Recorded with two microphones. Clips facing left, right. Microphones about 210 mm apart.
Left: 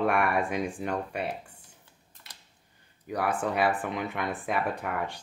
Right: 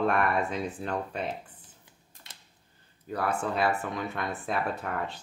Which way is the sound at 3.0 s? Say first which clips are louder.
Left 1 dB; 15° left (ahead or behind).